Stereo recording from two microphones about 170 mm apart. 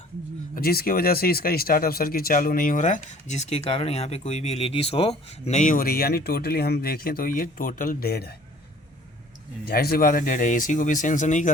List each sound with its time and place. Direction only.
0.5 s speech: 60° left (ahead or behind)
9.6 s speech: 60° left (ahead or behind)